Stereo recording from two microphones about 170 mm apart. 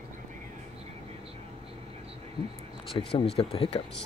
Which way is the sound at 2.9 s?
30° left (ahead or behind).